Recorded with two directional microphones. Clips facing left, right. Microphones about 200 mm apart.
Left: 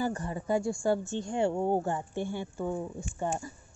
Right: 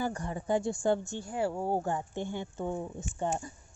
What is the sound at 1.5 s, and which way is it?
Speech, 20° left (ahead or behind).